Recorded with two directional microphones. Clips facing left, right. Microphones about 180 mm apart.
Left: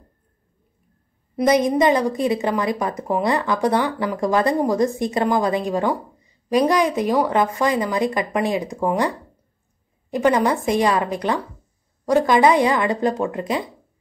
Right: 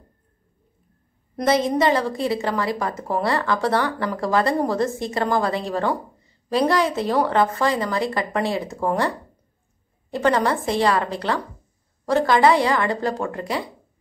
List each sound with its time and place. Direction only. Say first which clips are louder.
1.3 s a woman's voice: left 3 dB; 15° left (ahead or behind)
10.1 s a woman's voice: left 2 dB; 15° left (ahead or behind)